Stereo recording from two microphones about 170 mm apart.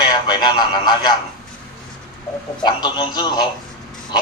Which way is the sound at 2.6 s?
25° left (ahead or behind).